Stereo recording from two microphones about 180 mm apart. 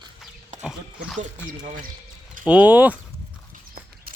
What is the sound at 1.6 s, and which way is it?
Speech, 40° right (ahead or behind).